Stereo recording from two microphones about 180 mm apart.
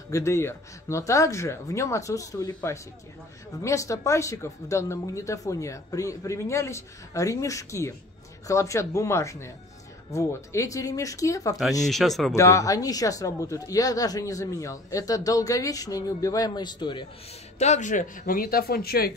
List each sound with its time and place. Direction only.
0.1 s speech: 15° left (ahead or behind)
11.8 s speech: centre (ahead or behind)
12.4 s speech: 15° left (ahead or behind)
17.6 s speech: 40° left (ahead or behind); by 19.1 s 60° left (ahead or behind)